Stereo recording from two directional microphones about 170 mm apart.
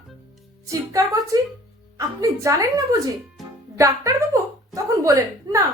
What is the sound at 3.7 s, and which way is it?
A woman's voice, 20° right (ahead or behind).